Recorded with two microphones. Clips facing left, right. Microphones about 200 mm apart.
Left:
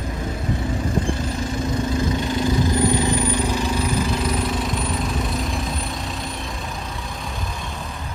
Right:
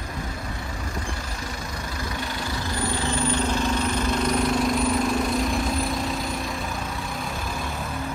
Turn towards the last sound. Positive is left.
turn(degrees=0)  # may be behind; listen again after turning